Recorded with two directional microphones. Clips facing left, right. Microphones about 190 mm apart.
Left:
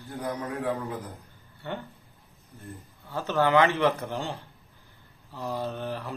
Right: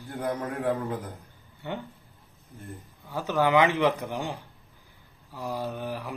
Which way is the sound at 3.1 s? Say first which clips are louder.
Even; 15° right (ahead or behind).